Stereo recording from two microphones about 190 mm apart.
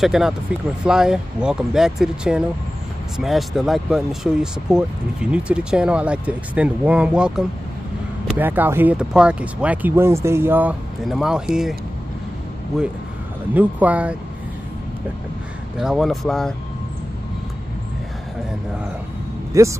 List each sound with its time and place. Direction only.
0.0 s speech: centre (ahead or behind)
13.6 s speech: 10° right (ahead or behind)
15.8 s speech: centre (ahead or behind)
19.5 s speech: 15° right (ahead or behind)